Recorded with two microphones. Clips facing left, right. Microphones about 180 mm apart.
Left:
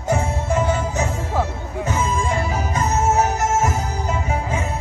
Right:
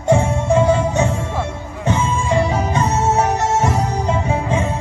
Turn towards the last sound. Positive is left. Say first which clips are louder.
# right 4 dB
turn(degrees=-30)  # may be behind; listen again after turning